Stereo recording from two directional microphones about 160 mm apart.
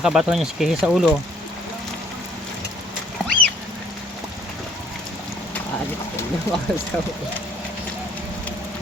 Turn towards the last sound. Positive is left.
turn(degrees=5)  # may be behind; listen again after turning